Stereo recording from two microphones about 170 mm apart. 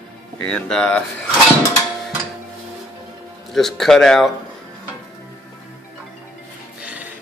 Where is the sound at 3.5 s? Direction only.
Centre (ahead or behind).